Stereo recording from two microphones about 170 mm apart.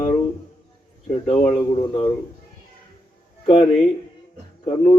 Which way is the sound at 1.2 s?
40° left (ahead or behind).